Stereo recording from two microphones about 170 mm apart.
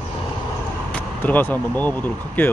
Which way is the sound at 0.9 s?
10° left (ahead or behind).